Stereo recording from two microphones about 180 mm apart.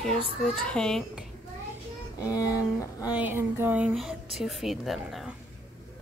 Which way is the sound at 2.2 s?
20° left (ahead or behind).